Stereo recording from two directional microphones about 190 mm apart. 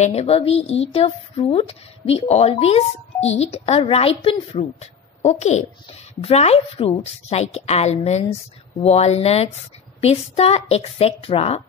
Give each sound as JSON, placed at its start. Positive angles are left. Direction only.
{"t": 0.0, "sound": "a woman's voice", "side_deg": 35}